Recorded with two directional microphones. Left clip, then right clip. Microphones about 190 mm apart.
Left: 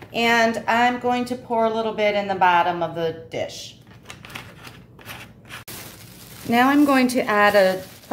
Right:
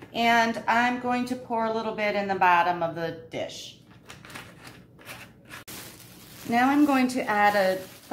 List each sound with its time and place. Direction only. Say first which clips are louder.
0.1 s a woman's voice: left 4 dB; 40° left (ahead or behind)
6.5 s a woman's voice: left 5 dB; 55° left (ahead or behind)